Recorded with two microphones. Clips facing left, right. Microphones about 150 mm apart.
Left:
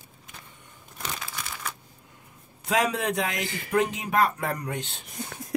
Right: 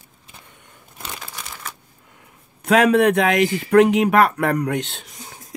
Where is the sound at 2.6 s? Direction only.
65° right (ahead or behind).